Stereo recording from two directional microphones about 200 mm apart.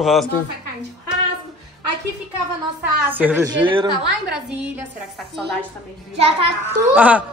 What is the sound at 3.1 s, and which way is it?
Speech, 10° right (ahead or behind).